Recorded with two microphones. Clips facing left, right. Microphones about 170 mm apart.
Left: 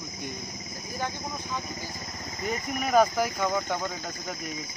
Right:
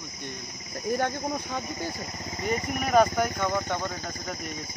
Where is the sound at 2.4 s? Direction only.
Centre (ahead or behind).